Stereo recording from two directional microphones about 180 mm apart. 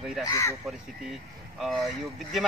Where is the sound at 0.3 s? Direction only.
15° left (ahead or behind).